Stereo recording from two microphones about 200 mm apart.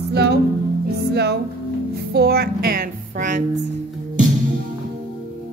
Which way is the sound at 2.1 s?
50° right (ahead or behind).